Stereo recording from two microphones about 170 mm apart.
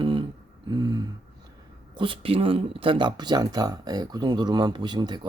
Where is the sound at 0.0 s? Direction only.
30° right (ahead or behind).